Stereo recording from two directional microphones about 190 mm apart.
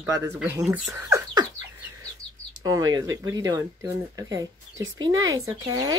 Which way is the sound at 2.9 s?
20° right (ahead or behind).